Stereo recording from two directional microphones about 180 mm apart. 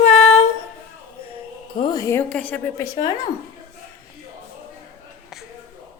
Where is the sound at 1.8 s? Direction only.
20° left (ahead or behind).